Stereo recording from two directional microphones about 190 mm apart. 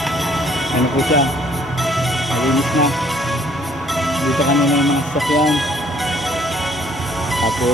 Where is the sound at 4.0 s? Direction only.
Centre (ahead or behind).